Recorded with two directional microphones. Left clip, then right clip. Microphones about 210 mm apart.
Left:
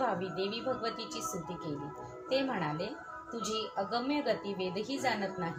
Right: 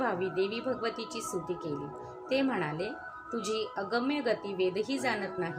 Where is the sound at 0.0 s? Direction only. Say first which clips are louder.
Right 3 dB; 35° right (ahead or behind).